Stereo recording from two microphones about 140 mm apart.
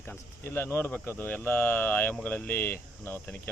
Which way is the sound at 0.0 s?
15° left (ahead or behind).